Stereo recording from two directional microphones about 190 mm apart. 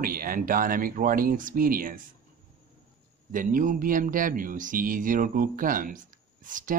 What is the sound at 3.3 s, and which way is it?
Speech, 45° right (ahead or behind).